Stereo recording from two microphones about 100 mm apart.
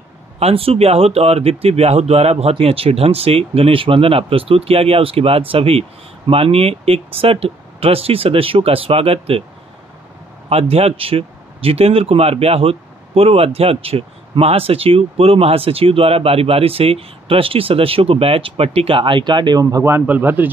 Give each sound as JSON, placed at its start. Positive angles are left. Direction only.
{"t": 0.4, "sound": "speech", "side_deg": -80}
{"t": 10.5, "sound": "speech", "side_deg": -90}
{"t": 19.6, "sound": "speech", "side_deg": -35}
{"t": 19.9, "sound": "speech", "side_deg": -20}